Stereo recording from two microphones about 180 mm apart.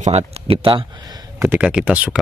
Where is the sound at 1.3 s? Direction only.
10° right (ahead or behind).